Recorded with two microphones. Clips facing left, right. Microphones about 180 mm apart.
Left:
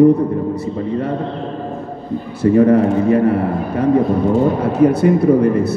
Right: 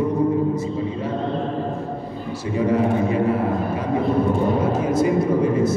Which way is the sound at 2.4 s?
55° left (ahead or behind).